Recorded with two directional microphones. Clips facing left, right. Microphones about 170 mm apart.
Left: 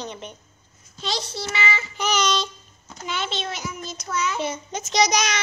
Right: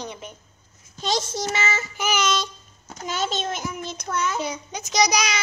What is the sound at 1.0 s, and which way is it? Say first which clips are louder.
Speech: right 4 dB; 45° right (ahead or behind).